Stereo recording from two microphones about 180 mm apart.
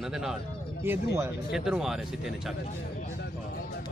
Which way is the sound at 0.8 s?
15° right (ahead or behind).